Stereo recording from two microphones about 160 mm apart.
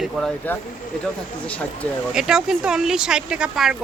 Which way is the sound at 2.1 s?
5° right (ahead or behind).